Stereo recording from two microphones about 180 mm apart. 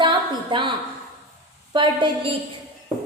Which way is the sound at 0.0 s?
25° right (ahead or behind).